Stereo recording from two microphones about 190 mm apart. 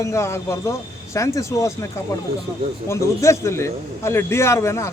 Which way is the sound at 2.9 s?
15° left (ahead or behind).